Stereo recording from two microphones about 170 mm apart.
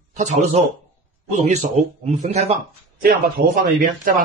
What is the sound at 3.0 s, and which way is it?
A man's voice, 60° right (ahead or behind).